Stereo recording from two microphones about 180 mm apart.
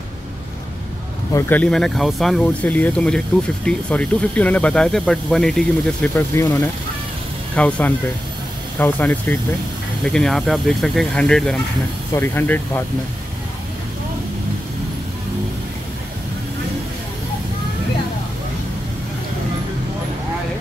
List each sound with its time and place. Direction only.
1.3 s speech: 10° left (ahead or behind)
6.1 s speech: 15° left (ahead or behind)